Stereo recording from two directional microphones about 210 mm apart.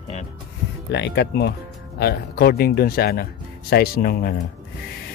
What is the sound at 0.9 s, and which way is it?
Speech, 55° left (ahead or behind).